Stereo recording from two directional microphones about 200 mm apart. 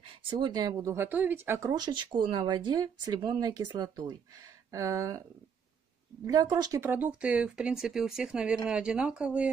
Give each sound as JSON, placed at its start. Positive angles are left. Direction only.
{"t": 0.3, "sound": "speech", "side_deg": -20}
{"t": 6.2, "sound": "speech", "side_deg": -20}